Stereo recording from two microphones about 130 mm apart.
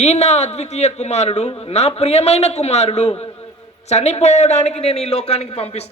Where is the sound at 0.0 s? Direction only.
60° left (ahead or behind).